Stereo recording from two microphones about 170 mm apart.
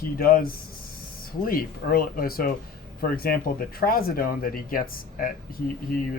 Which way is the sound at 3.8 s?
60° left (ahead or behind).